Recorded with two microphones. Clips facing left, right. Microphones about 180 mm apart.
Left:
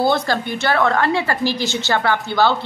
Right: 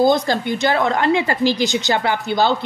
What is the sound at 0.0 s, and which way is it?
A woman's voice, 15° right (ahead or behind).